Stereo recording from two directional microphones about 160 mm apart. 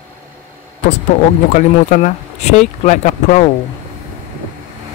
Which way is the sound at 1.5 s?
50° left (ahead or behind).